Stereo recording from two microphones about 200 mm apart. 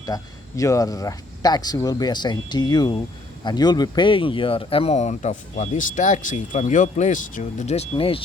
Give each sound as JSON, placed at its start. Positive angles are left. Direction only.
{"t": 0.0, "sound": "speech", "side_deg": 15}